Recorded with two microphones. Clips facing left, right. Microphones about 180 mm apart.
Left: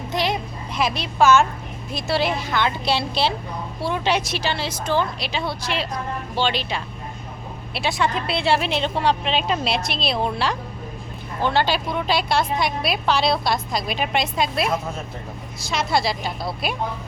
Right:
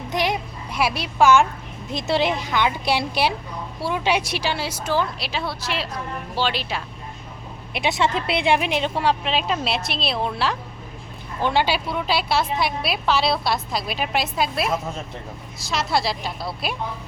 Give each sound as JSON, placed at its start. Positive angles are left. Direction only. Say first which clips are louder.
{"t": 0.1, "sound": "a woman's voice", "louder": "even", "side_deg": -15}
{"t": 7.7, "sound": "a woman's voice", "louder": "right 1 dB", "side_deg": -20}